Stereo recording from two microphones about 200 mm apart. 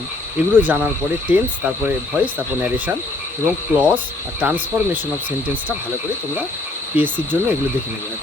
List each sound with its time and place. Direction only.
0.5 s speech: 10° right (ahead or behind)
6.9 s speech: 10° right (ahead or behind)